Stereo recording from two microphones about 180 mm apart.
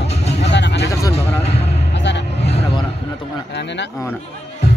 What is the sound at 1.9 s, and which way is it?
Music, 75° left (ahead or behind).